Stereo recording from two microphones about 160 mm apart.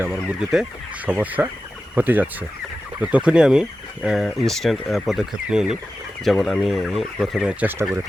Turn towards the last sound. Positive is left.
turn(degrees=-10)  # may be behind; listen again after turning